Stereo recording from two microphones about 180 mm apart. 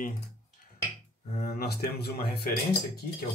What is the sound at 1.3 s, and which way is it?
Speech, 55° left (ahead or behind).